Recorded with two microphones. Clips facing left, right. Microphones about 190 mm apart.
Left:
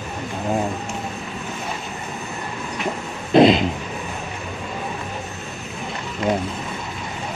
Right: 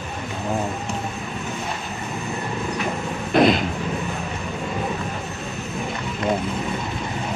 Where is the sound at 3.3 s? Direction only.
25° left (ahead or behind).